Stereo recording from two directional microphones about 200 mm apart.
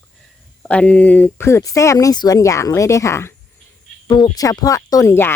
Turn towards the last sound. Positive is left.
turn(degrees=10)  # may be behind; listen again after turning